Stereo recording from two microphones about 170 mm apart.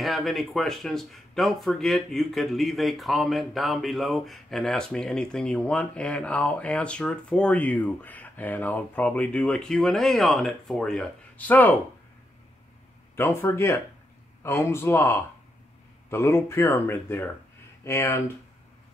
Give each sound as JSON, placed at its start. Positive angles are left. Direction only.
{"t": 0.0, "sound": "speech", "side_deg": 0}
{"t": 13.1, "sound": "speech", "side_deg": 15}